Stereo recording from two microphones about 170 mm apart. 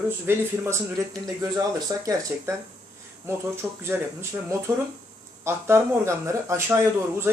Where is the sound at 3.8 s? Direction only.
15° right (ahead or behind).